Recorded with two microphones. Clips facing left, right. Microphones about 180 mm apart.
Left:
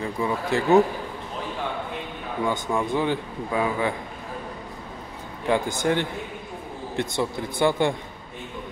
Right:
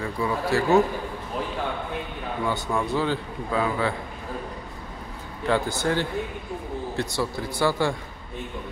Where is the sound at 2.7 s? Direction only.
15° left (ahead or behind).